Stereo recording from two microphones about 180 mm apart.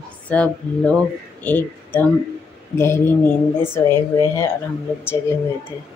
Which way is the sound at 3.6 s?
10° left (ahead or behind).